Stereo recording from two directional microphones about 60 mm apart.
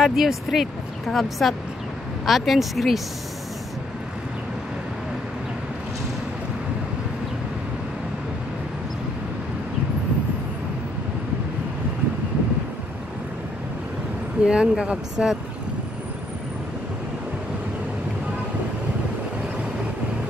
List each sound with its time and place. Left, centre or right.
0.0 s speech: centre
14.4 s speech: centre